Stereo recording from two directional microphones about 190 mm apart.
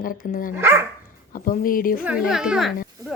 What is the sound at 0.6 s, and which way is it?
Speech, 10° right (ahead or behind).